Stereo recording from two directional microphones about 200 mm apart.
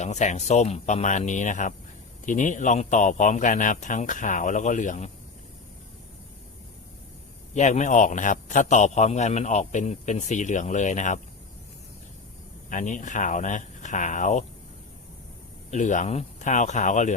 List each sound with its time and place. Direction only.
0.0 s a man's voice: 35° left (ahead or behind)
7.5 s a man's voice: 35° left (ahead or behind)
12.7 s a man's voice: 40° left (ahead or behind)
15.7 s a man's voice: 40° left (ahead or behind)